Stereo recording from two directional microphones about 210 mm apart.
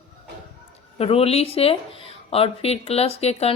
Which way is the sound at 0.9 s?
30° left (ahead or behind).